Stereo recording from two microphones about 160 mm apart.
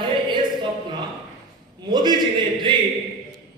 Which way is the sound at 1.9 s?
25° right (ahead or behind).